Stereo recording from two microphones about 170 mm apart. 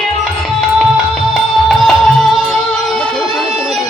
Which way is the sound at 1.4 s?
Centre (ahead or behind).